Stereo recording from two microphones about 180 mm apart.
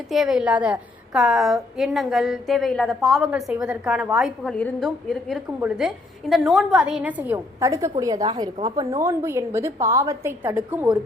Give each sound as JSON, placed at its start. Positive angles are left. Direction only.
{"t": 0.1, "sound": "a woman's voice", "side_deg": 0}